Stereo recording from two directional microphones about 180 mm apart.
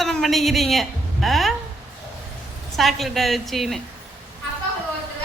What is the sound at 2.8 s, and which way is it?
A woman's voice, centre (ahead or behind).